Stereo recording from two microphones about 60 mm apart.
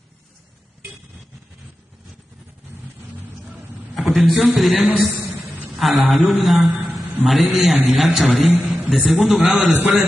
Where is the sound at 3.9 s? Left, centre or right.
Centre.